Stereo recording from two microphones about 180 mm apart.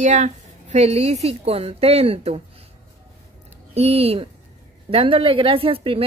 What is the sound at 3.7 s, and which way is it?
A woman's voice, 35° right (ahead or behind).